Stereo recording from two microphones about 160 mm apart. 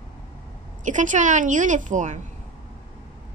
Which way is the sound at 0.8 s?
50° right (ahead or behind).